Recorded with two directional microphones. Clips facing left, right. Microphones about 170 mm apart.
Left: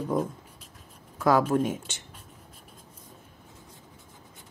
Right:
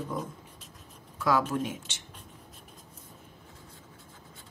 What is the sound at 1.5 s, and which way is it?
Speech, 50° left (ahead or behind).